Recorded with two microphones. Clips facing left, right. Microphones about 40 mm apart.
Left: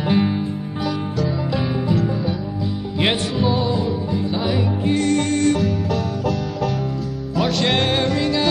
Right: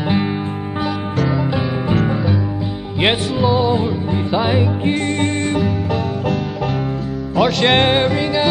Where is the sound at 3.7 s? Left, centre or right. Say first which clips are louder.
Right 3 dB; right.